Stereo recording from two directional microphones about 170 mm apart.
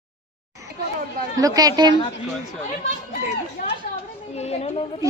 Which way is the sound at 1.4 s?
20° right (ahead or behind).